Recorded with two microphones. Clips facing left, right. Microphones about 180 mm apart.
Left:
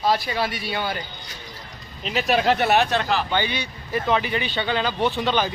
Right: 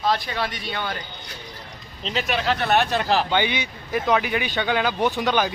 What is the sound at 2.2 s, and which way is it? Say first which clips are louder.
Speech: left 6 dB; 40° left (ahead or behind).